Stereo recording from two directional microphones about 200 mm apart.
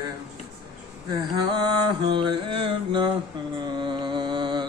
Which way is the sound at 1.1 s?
20° right (ahead or behind).